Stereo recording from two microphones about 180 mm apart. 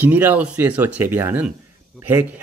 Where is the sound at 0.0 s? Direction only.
10° right (ahead or behind).